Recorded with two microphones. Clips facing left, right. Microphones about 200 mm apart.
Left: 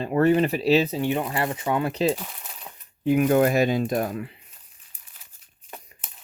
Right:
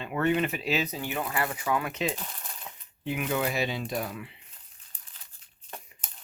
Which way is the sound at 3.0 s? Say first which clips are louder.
Left 11 dB; 45° left (ahead or behind).